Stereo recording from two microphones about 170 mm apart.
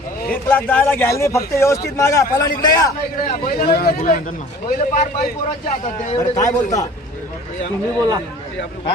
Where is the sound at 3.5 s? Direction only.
60° left (ahead or behind).